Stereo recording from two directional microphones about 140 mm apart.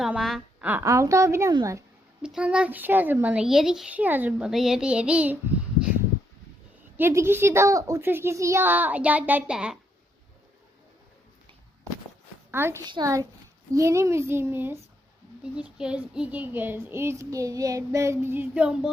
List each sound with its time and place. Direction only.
0.0 s a woman's voice: centre (ahead or behind)
0.6 s a child's voice: 15° right (ahead or behind)
2.2 s child singing: 5° right (ahead or behind)
6.9 s child singing: 15° right (ahead or behind)
12.5 s a woman's voice: 15° right (ahead or behind)
12.8 s a child's voice: 30° right (ahead or behind)
15.5 s child singing: 5° right (ahead or behind)